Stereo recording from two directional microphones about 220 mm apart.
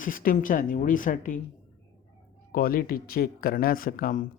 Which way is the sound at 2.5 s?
40° left (ahead or behind).